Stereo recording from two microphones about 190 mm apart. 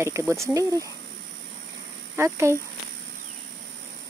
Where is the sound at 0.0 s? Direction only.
15° right (ahead or behind).